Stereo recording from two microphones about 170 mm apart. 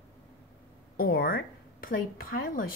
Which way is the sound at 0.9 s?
60° left (ahead or behind).